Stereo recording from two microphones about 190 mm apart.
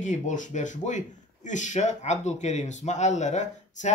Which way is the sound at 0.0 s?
40° left (ahead or behind).